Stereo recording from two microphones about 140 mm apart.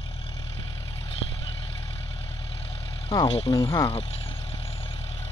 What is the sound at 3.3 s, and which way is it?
Speech, 45° left (ahead or behind).